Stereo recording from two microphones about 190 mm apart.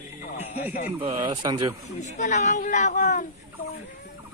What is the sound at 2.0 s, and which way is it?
Speech, 40° left (ahead or behind).